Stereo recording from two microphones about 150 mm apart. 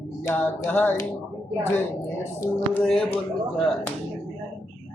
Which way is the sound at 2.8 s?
Centre (ahead or behind).